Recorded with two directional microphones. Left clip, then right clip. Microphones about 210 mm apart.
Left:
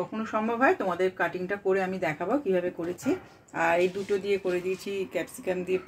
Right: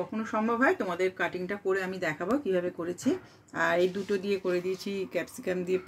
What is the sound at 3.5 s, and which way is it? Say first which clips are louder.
Speech: left 2 dB; 35° right (ahead or behind).